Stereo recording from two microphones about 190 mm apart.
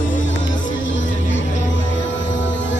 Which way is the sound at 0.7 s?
75° left (ahead or behind).